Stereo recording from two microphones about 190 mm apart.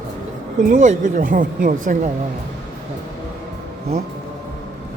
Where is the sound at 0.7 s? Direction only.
40° right (ahead or behind).